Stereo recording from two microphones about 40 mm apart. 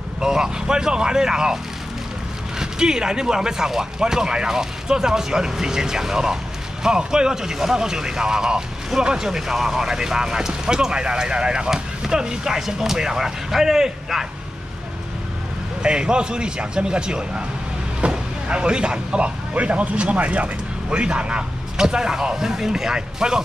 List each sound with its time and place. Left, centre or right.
0.2 s speech: centre
2.6 s speech: centre
15.8 s a man's voice: right